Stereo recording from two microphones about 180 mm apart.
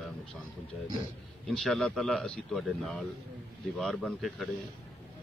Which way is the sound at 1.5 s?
Centre (ahead or behind).